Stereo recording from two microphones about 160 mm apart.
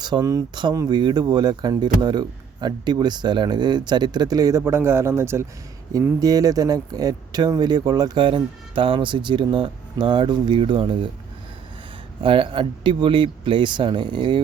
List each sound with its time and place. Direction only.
0.0 s speech: 25° right (ahead or behind)
12.2 s speech: 35° right (ahead or behind)